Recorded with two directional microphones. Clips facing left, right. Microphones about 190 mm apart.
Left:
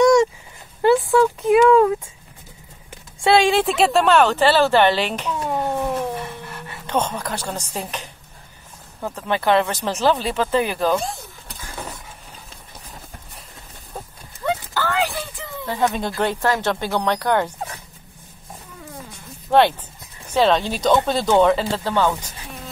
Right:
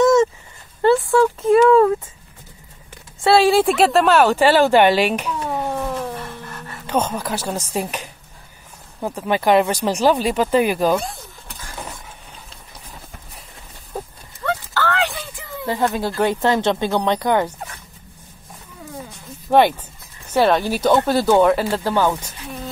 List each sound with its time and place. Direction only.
0.0 s a sound: 5° right (ahead or behind)
3.2 s speech: 5° right (ahead or behind)
5.5 s a sound: centre (ahead or behind)
6.9 s speech: 5° right (ahead or behind)
14.4 s clip-clop: 10° left (ahead or behind)
15.6 s speech: 10° right (ahead or behind)
19.5 s speech: 10° right (ahead or behind)